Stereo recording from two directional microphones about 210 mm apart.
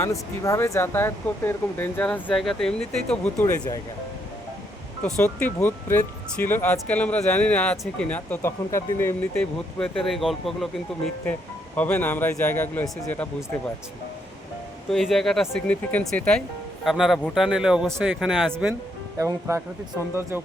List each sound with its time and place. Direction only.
0.0 s speech: 15° left (ahead or behind)
3.4 s speech: 15° left (ahead or behind)
5.0 s speech: 10° left (ahead or behind)
11.8 s speech: 10° left (ahead or behind)
14.8 s speech: centre (ahead or behind)
19.2 s speech: 15° right (ahead or behind)